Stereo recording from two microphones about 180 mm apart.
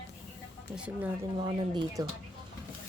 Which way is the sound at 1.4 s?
25° right (ahead or behind).